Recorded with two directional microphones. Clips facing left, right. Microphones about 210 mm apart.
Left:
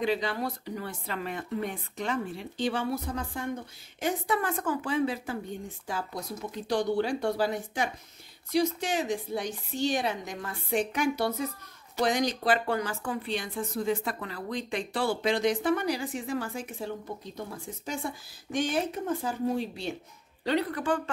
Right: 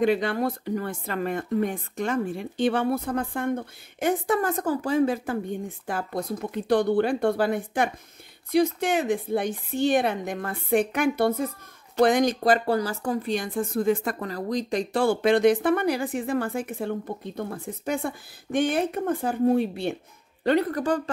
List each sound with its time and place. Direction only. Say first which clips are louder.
0.0 s speech: right 6 dB; 55° right (ahead or behind)